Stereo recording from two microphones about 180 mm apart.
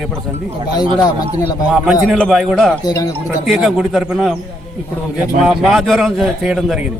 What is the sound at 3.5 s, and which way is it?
A man's voice, centre (ahead or behind).